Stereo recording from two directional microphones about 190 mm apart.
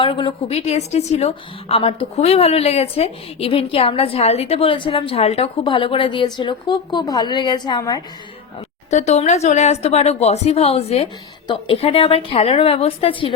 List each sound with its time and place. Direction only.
0.0 s a woman's voice: 25° left (ahead or behind)
8.9 s a woman's voice: 35° left (ahead or behind)